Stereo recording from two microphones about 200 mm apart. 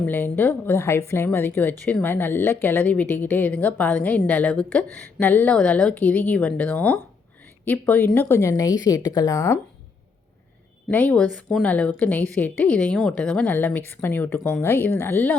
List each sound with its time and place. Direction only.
0.0 s a woman's voice: 10° left (ahead or behind)
10.8 s a woman's voice: 5° left (ahead or behind)